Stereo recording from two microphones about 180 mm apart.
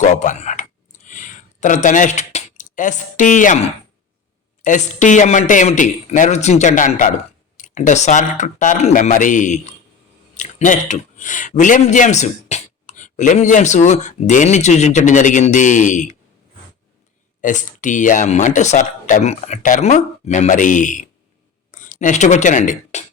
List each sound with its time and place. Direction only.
0.0 s speech: 40° left (ahead or behind)
1.0 s a sound: 45° left (ahead or behind)
4.6 s speech: 45° left (ahead or behind)
17.4 s speech: 45° left (ahead or behind)